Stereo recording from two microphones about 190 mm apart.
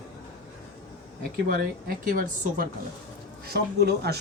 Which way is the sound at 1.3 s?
50° right (ahead or behind).